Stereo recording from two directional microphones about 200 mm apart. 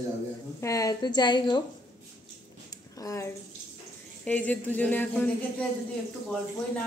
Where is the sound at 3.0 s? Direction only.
15° left (ahead or behind).